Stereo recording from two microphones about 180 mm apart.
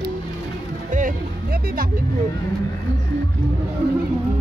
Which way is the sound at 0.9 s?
50° right (ahead or behind).